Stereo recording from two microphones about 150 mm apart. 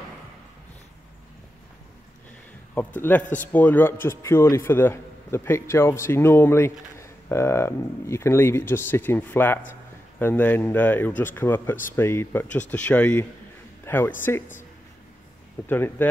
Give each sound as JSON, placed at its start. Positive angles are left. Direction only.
{"t": 3.0, "sound": "a man's voice", "side_deg": 10}
{"t": 15.7, "sound": "a man's voice", "side_deg": 10}